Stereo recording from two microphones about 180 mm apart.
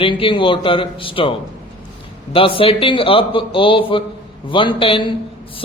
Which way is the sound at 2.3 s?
30° left (ahead or behind).